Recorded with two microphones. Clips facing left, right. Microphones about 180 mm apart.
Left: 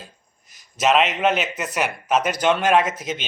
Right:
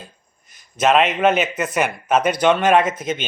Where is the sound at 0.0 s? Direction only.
50° right (ahead or behind).